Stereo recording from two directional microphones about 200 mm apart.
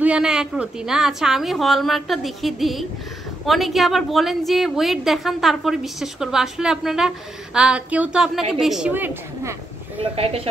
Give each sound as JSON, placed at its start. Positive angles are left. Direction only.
{"t": 0.0, "sound": "a woman's voice", "side_deg": -5}
{"t": 9.9, "sound": "speech", "side_deg": -30}